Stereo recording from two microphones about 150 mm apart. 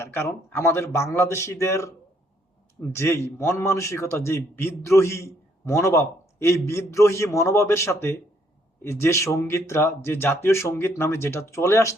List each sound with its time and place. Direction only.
0.0 s speech: 15° left (ahead or behind)
2.9 s a man's voice: 15° left (ahead or behind)